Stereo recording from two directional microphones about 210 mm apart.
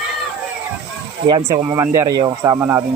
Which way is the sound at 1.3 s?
20° right (ahead or behind).